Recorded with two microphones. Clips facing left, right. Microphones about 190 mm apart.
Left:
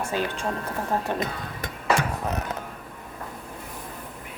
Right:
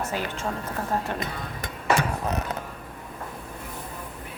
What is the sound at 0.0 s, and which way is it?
A woman's voice, 15° left (ahead or behind).